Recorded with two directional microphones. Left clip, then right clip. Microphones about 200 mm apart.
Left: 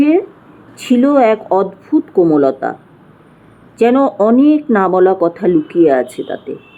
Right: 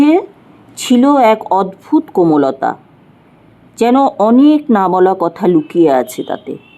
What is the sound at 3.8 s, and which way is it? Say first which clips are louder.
Speech: right 1 dB; 30° right (ahead or behind).